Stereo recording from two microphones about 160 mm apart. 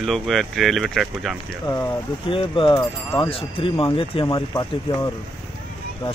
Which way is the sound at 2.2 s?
35° left (ahead or behind).